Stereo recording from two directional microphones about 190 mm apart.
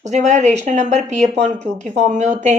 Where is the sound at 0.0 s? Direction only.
40° right (ahead or behind).